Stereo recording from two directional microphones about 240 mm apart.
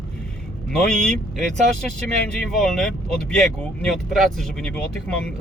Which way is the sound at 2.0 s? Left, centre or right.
Centre.